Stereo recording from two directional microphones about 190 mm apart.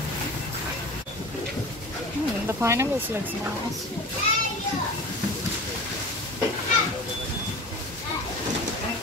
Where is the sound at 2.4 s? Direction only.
15° right (ahead or behind).